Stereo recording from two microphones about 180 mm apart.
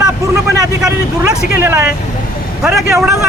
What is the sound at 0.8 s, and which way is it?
Speech, 15° right (ahead or behind).